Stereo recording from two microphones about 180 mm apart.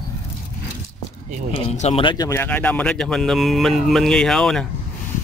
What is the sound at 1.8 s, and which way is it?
Speech, 30° left (ahead or behind).